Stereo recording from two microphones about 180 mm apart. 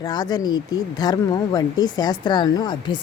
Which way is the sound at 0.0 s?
20° left (ahead or behind).